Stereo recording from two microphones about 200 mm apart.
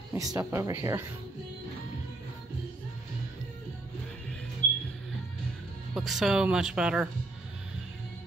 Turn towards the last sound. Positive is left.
turn(degrees=-5)  # may be behind; listen again after turning